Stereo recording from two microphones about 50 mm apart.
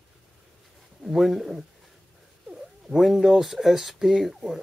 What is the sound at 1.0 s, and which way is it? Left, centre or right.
Speech, centre.